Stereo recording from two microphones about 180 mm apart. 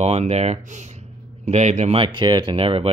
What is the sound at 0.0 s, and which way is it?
Speech, 35° right (ahead or behind).